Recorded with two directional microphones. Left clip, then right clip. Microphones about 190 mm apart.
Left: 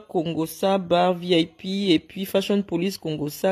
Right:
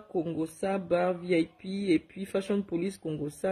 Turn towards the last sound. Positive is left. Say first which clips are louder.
# left 8 dB
turn(degrees=20)  # may be behind; listen again after turning